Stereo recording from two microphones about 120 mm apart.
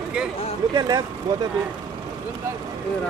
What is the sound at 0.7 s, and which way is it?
Speech, 35° right (ahead or behind).